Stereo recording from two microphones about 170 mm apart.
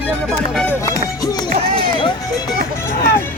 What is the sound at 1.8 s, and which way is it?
Music, 30° left (ahead or behind).